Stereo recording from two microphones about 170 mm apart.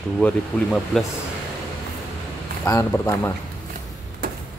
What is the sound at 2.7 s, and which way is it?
Speech, 15° left (ahead or behind).